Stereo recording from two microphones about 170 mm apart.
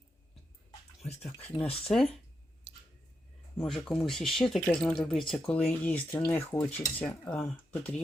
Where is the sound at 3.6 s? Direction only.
Centre (ahead or behind).